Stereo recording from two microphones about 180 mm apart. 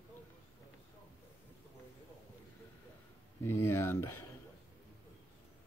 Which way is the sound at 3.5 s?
15° left (ahead or behind).